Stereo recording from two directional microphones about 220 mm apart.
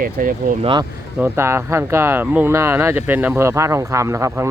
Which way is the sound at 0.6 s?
20° right (ahead or behind).